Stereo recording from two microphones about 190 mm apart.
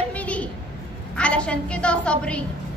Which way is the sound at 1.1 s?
5° left (ahead or behind).